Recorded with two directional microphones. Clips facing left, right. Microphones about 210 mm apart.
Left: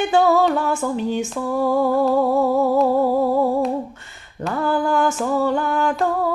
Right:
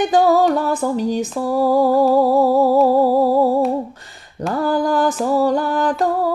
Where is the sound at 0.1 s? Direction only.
35° right (ahead or behind).